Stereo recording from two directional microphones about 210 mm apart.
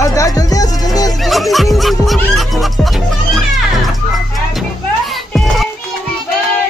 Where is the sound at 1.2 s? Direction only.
Centre (ahead or behind).